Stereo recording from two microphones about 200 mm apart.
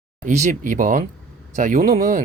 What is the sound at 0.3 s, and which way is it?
Speech, 35° right (ahead or behind).